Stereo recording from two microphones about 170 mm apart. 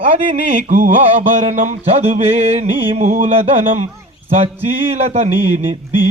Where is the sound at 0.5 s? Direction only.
50° right (ahead or behind).